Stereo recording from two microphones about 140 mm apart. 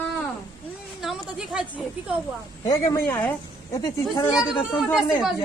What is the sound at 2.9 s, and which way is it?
Speech, 10° left (ahead or behind).